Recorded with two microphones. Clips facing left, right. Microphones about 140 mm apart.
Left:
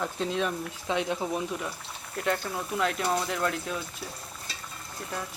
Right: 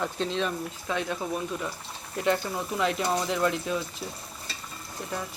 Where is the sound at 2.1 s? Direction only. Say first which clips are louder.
Right 3 dB; 5° right (ahead or behind).